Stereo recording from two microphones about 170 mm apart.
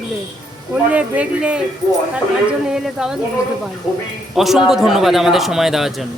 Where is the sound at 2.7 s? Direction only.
5° right (ahead or behind).